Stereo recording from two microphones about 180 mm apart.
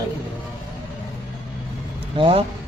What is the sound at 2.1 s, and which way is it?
Speech, 25° right (ahead or behind).